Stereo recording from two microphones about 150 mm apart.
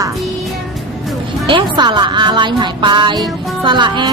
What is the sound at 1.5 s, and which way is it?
A woman's voice, 30° right (ahead or behind).